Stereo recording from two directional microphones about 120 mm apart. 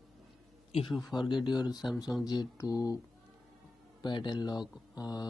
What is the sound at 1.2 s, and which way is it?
Speech, 40° left (ahead or behind).